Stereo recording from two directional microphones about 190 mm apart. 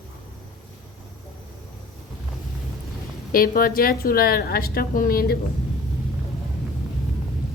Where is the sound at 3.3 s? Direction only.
45° left (ahead or behind).